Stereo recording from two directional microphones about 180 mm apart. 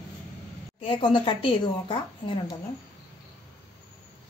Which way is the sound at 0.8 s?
30° left (ahead or behind).